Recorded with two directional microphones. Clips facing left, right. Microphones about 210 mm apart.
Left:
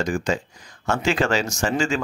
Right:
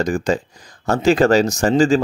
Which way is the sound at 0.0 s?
35° right (ahead or behind).